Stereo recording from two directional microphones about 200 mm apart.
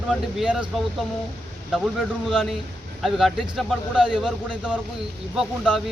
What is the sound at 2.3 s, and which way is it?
A man's voice, centre (ahead or behind).